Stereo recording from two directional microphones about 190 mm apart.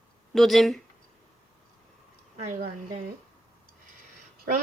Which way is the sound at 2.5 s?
40° right (ahead or behind).